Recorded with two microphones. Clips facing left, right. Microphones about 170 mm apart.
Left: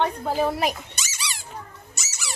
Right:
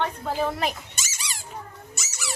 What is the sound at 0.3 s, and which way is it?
Speech, 10° left (ahead or behind).